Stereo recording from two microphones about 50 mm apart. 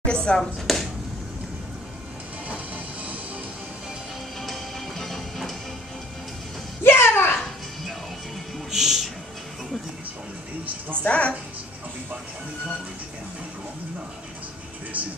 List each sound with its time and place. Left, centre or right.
0.0 s chopping: centre
0.4 s chopping: centre
2.4 s music: right
4.4 s music: centre
6.8 s a sound: left
8.7 s music: centre
11.0 s a woman's voice: left